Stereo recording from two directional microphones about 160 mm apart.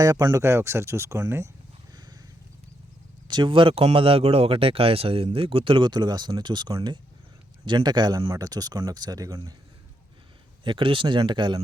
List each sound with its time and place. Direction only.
0.0 s speech: 25° right (ahead or behind)
1.9 s a sound: 25° right (ahead or behind)
3.2 s speech: 30° right (ahead or behind)
10.6 s speech: 30° right (ahead or behind)